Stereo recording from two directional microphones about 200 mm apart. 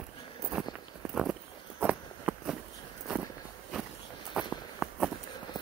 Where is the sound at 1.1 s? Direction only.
Centre (ahead or behind).